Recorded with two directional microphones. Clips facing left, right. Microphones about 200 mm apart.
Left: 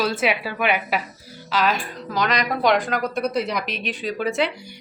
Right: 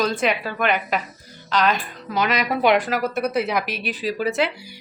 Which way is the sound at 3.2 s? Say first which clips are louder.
Right 1 dB; 55° right (ahead or behind).